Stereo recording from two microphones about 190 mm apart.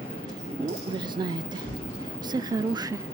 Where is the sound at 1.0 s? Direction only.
25° right (ahead or behind).